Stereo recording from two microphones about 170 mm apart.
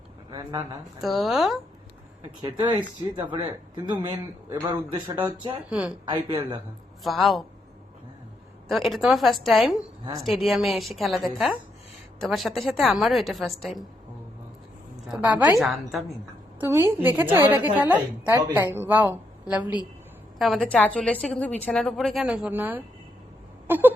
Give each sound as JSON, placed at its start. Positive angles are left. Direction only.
{"t": 0.3, "sound": "speech", "side_deg": -25}
{"t": 1.0, "sound": "a woman's voice", "side_deg": 0}
{"t": 2.4, "sound": "speech", "side_deg": -25}
{"t": 6.2, "sound": "speech", "side_deg": -30}
{"t": 7.0, "sound": "a woman's voice", "side_deg": 0}
{"t": 8.6, "sound": "a woman's voice", "side_deg": 0}
{"t": 15.1, "sound": "a woman's voice", "side_deg": -10}
{"t": 16.6, "sound": "a woman's voice", "side_deg": -15}
{"t": 20.4, "sound": "a woman's voice", "side_deg": 5}
{"t": 23.6, "sound": "a sound", "side_deg": -10}